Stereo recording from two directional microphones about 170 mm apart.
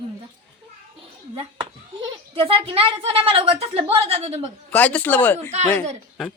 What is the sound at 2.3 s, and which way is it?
A woman's voice, 35° right (ahead or behind).